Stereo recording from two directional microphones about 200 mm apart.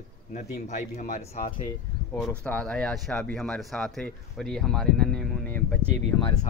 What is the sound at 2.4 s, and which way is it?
Speech, 5° left (ahead or behind).